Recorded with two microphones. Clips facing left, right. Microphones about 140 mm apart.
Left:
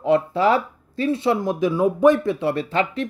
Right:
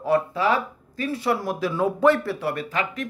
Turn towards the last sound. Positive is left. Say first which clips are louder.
# left 5 dB
turn(degrees=30)  # may be behind; listen again after turning